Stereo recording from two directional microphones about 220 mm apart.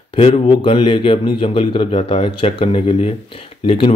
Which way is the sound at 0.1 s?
25° left (ahead or behind).